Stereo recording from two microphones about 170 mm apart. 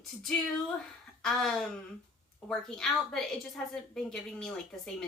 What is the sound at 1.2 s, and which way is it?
A woman's voice, 5° left (ahead or behind).